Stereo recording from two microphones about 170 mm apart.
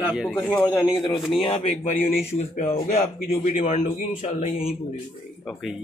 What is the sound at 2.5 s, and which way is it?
Speech, 55° left (ahead or behind).